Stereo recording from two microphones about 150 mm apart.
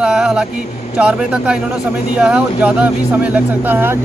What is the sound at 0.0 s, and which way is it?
Vehicle, 5° right (ahead or behind).